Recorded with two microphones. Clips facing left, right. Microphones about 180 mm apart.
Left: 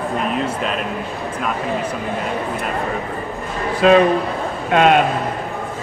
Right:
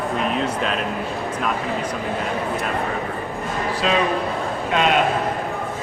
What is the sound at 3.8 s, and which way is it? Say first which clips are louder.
A man's voice: left 9 dB; 55° left (ahead or behind).